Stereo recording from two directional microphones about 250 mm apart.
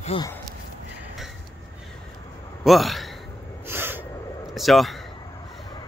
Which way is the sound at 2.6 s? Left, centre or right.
Centre.